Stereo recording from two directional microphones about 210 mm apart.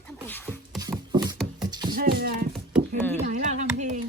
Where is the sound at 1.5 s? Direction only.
20° right (ahead or behind).